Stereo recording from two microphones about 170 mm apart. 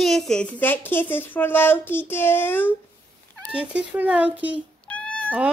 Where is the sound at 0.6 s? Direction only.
10° left (ahead or behind).